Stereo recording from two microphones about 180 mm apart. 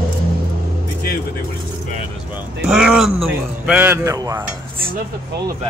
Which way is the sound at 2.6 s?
Centre (ahead or behind).